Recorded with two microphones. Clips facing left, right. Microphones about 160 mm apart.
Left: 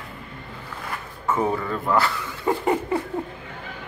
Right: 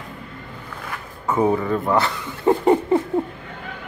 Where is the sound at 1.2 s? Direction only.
15° right (ahead or behind).